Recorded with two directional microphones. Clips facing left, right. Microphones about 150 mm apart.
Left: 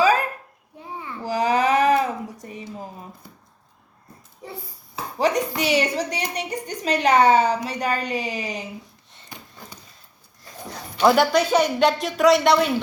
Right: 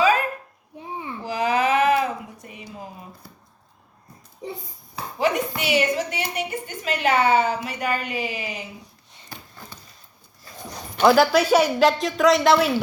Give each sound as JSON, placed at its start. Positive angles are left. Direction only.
{"t": 0.8, "sound": "babbling", "side_deg": -20}
{"t": 1.2, "sound": "a sound", "side_deg": 40}
{"t": 5.2, "sound": "a woman's voice", "side_deg": 35}
{"t": 11.0, "sound": "speech", "side_deg": 0}